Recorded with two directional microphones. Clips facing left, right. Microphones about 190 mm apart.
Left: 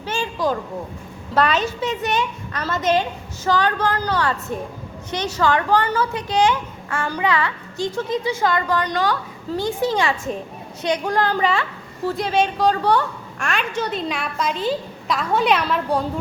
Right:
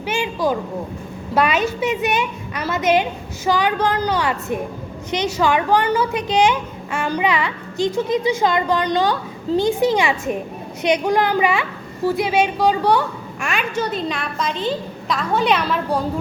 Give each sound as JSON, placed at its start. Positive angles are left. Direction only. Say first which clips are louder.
{"t": 0.0, "sound": "a woman's voice", "louder": "right 2 dB", "side_deg": -15}